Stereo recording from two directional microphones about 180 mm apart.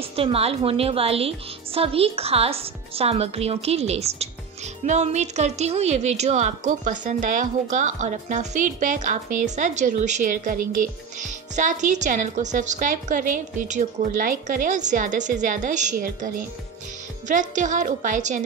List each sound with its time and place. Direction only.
0.1 s a woman's voice: 30° right (ahead or behind)
17.3 s a woman's voice: 45° right (ahead or behind)